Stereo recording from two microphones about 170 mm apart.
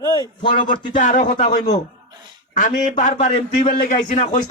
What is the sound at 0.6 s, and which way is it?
Speech, 50° left (ahead or behind).